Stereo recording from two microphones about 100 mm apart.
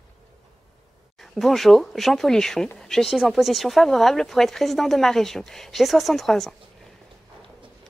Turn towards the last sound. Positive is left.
turn(degrees=0)  # may be behind; listen again after turning